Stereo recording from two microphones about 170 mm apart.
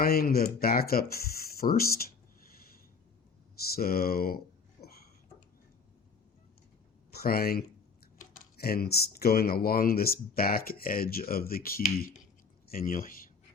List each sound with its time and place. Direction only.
0.0 s speech: 65° left (ahead or behind)
3.8 s speech: 65° left (ahead or behind)
7.1 s speech: 65° left (ahead or behind)